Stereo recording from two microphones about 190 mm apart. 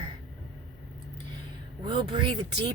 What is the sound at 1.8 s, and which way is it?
Speech, 25° right (ahead or behind).